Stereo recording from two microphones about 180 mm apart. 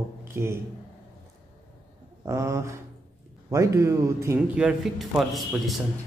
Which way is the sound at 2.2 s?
15° right (ahead or behind).